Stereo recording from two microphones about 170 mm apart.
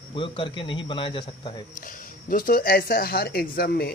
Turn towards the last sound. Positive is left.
turn(degrees=65)  # may be behind; listen again after turning